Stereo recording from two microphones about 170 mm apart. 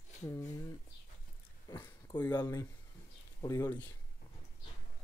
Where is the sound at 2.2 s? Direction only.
20° left (ahead or behind).